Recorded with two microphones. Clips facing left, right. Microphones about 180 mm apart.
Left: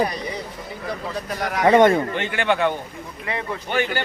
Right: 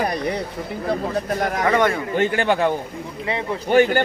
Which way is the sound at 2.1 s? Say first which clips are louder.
Right 3 dB; 40° right (ahead or behind).